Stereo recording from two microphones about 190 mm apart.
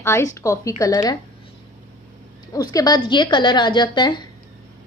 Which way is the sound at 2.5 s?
20° left (ahead or behind).